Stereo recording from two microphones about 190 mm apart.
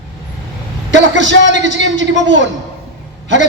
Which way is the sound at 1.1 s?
70° right (ahead or behind).